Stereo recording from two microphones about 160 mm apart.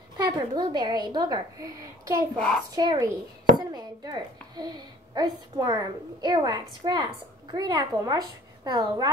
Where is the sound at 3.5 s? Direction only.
25° right (ahead or behind).